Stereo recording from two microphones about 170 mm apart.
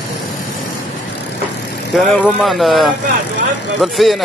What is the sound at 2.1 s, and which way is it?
Speech, 10° left (ahead or behind).